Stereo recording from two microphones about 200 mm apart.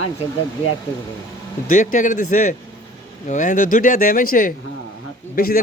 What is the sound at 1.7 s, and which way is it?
Speech, 40° left (ahead or behind).